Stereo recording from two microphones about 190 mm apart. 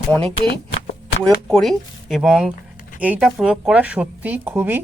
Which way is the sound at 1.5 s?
Centre (ahead or behind).